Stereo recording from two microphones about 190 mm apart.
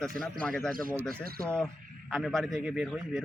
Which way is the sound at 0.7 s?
50° right (ahead or behind).